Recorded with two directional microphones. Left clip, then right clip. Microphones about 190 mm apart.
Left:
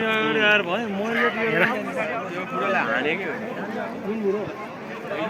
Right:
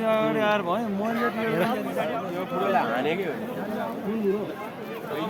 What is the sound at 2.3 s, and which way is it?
Speech, 55° right (ahead or behind).